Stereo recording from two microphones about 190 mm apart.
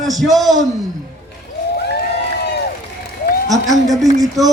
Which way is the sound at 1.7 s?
60° left (ahead or behind).